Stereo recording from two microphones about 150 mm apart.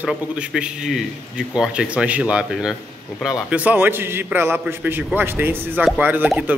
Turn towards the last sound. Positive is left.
turn(degrees=-5)  # may be behind; listen again after turning